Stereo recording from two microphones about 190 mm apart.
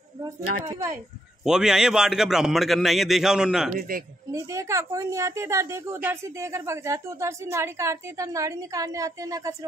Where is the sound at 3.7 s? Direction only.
45° right (ahead or behind).